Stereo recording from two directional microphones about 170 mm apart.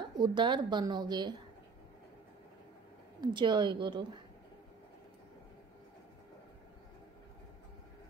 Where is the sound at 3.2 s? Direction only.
25° right (ahead or behind).